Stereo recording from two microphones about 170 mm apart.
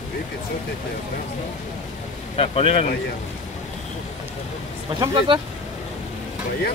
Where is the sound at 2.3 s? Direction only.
35° left (ahead or behind).